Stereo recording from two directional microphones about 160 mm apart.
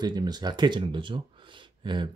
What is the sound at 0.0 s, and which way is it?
Speech, 25° right (ahead or behind).